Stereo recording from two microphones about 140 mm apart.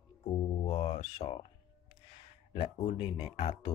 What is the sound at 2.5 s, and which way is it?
Speech, 45° left (ahead or behind).